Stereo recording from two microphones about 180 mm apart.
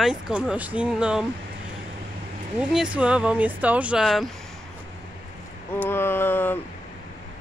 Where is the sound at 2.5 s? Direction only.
5° right (ahead or behind).